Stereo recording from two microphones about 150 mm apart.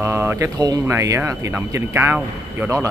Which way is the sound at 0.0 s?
15° right (ahead or behind).